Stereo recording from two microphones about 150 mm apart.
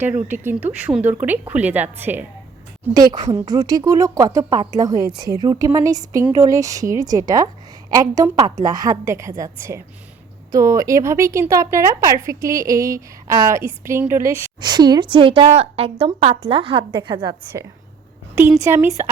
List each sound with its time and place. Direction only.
0.3 s a woman's voice: 10° right (ahead or behind)
2.9 s a woman's voice: 30° right (ahead or behind)
18.6 s a woman's voice: 20° right (ahead or behind)